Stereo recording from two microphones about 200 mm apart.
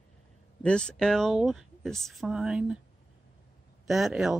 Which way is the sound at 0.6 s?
5° left (ahead or behind).